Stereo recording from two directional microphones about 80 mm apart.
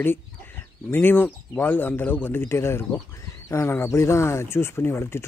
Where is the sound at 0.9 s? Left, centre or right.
Left.